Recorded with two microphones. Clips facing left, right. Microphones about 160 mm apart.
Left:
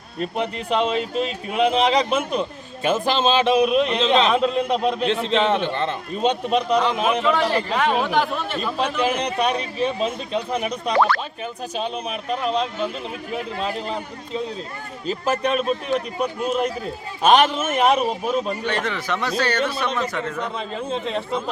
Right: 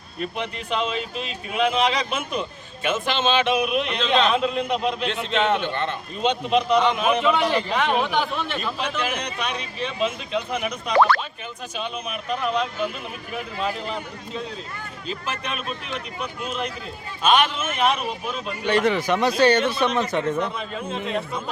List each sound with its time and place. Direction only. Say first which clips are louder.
0.2 s a man's voice: left 4 dB; 35° left (ahead or behind)
7.5 s speech: left 1 dB; 5° left (ahead or behind)
9.0 s a man's voice: left 7 dB; 30° left (ahead or behind)
15.0 s a man's voice: left 9 dB; 40° left (ahead or behind)
18.6 s speech: right 5 dB; 10° right (ahead or behind)